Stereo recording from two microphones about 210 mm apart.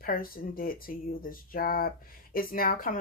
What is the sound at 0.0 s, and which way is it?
Speech, 45° left (ahead or behind).